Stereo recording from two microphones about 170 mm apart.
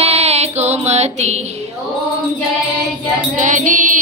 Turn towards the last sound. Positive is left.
turn(degrees=-50)  # may be behind; listen again after turning